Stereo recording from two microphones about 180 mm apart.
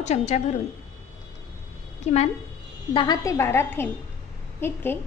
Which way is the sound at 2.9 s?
25° left (ahead or behind).